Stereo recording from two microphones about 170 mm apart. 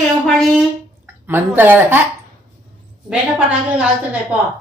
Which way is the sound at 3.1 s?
10° right (ahead or behind).